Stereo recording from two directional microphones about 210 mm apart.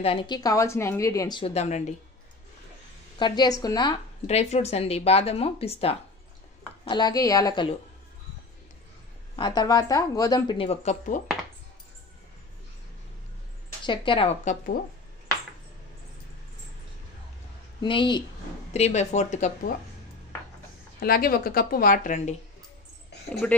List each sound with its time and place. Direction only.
0.0 s a woman's voice: 25° left (ahead or behind)
1.4 s speech: 30° left (ahead or behind)
3.2 s a woman's voice: 20° left (ahead or behind)
9.4 s a woman's voice: 20° left (ahead or behind); by 11.2 s 35° left (ahead or behind)
13.8 s a woman's voice: 25° left (ahead or behind)
17.8 s a woman's voice: 20° left (ahead or behind)
21.0 s a woman's voice: 45° left (ahead or behind)
23.4 s speech: 5° left (ahead or behind)